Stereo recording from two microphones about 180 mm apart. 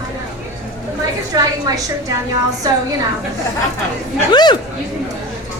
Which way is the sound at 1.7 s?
20° right (ahead or behind).